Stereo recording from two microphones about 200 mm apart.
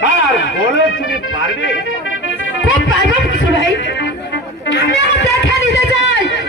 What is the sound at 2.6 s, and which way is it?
Music, 75° left (ahead or behind).